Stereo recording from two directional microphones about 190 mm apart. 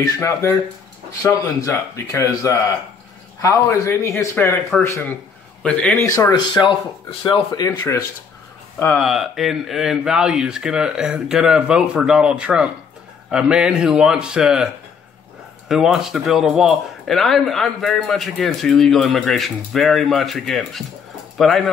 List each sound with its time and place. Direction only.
0.0 s speech: 15° left (ahead or behind)
6.0 s speech: 20° left (ahead or behind)
8.7 s speech: 10° left (ahead or behind)
9.0 s speech: centre (ahead or behind)
15.7 s speech: centre (ahead or behind)